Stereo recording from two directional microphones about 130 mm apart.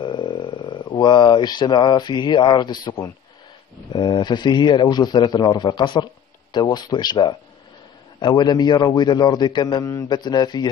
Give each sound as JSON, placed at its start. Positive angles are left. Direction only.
{"t": 0.0, "sound": "speech", "side_deg": 40}
{"t": 3.9, "sound": "a man's voice", "side_deg": 35}